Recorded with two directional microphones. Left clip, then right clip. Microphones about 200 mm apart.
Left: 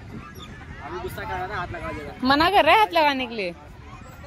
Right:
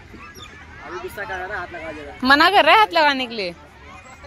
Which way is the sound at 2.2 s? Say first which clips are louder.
Right 5 dB; 5° right (ahead or behind).